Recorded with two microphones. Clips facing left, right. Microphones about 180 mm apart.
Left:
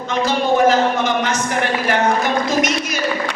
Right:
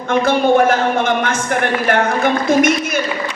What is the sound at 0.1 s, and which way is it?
A man's voice, 55° right (ahead or behind).